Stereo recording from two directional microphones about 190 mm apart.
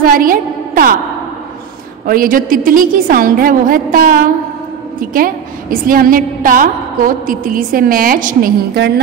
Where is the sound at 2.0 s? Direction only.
50° right (ahead or behind).